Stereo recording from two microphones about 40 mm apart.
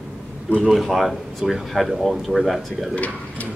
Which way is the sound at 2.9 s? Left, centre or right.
Left.